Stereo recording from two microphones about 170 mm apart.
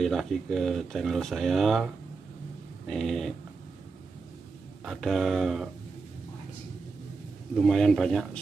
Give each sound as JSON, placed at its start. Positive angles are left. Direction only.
{"t": 0.0, "sound": "speech", "side_deg": 0}
{"t": 2.9, "sound": "speech", "side_deg": 0}
{"t": 4.8, "sound": "speech", "side_deg": 0}
{"t": 7.5, "sound": "speech", "side_deg": 0}